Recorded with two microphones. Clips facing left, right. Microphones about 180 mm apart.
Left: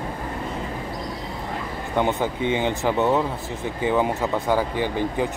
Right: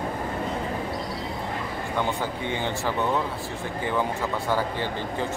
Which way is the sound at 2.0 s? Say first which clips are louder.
Left 6 dB; 20° left (ahead or behind).